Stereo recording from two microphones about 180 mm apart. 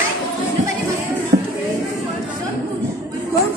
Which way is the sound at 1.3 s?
55° right (ahead or behind).